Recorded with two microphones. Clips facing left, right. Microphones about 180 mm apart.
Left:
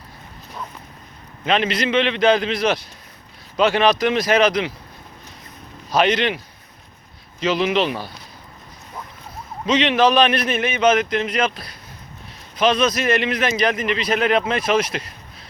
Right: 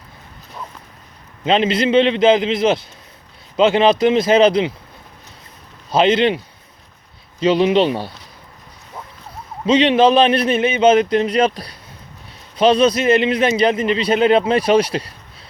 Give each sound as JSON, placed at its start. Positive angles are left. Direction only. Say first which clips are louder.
{"t": 1.5, "sound": "a man's voice", "louder": "right 4 dB", "side_deg": -25}
{"t": 5.9, "sound": "a man's voice", "louder": "right 4 dB", "side_deg": -25}
{"t": 7.4, "sound": "speech", "louder": "right 5 dB", "side_deg": -30}
{"t": 9.6, "sound": "a man's voice", "louder": "right 4 dB", "side_deg": -30}